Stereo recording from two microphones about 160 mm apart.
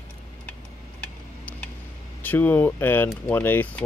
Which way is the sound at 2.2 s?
10° left (ahead or behind).